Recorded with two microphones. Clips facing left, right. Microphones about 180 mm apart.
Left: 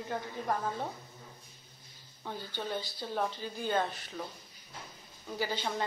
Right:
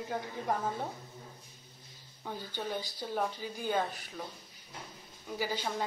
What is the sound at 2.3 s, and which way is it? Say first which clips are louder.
Speech: even; 10° right (ahead or behind).